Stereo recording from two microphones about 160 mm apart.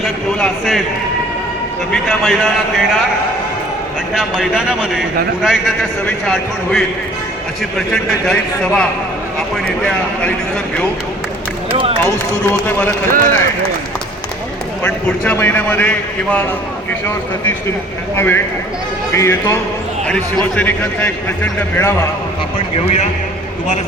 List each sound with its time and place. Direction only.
0.0 s a man's voice: centre (ahead or behind)
1.9 s a man's voice: centre (ahead or behind)
4.1 s a man's voice: 5° right (ahead or behind)
12.0 s a man's voice: 15° left (ahead or behind)
13.1 s a man's voice: 60° right (ahead or behind)
14.8 s a man's voice: 10° left (ahead or behind)
18.2 s a man's voice: 15° left (ahead or behind)